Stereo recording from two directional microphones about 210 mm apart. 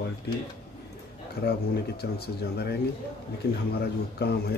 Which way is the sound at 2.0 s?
50° left (ahead or behind).